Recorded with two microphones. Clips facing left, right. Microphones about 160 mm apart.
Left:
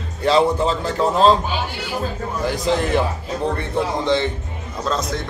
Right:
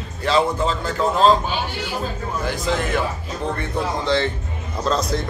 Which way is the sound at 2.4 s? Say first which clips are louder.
Left 4 dB; 35° left (ahead or behind).